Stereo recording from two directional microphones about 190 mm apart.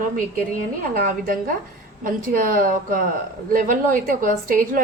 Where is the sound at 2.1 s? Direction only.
45° right (ahead or behind).